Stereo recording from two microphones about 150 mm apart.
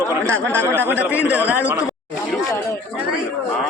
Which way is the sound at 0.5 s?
15° right (ahead or behind).